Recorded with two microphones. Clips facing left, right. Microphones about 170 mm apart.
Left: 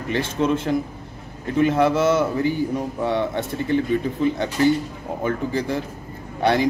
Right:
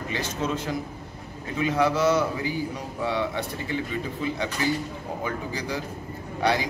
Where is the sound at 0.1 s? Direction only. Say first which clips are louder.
Left 8 dB; 55° left (ahead or behind).